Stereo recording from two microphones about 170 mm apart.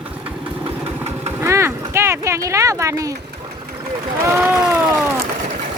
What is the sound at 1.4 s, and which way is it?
Clip-clop, 15° right (ahead or behind).